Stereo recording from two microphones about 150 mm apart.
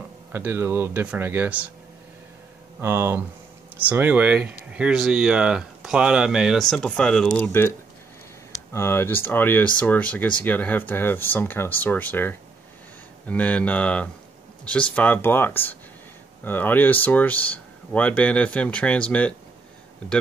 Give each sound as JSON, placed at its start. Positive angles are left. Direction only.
{"t": 0.3, "sound": "speech", "side_deg": -15}
{"t": 2.8, "sound": "speech", "side_deg": -15}